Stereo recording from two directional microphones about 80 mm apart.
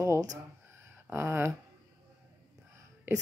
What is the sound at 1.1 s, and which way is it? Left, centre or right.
Speech, right.